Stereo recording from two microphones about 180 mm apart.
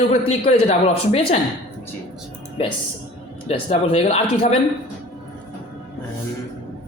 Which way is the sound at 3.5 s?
35° left (ahead or behind).